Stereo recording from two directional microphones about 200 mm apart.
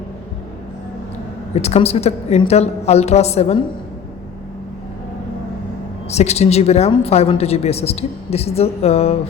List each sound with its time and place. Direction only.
1.6 s a woman's voice: 30° left (ahead or behind)
6.1 s a woman's voice: 30° left (ahead or behind)